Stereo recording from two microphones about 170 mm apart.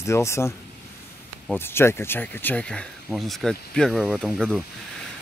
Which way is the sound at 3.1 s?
Centre (ahead or behind).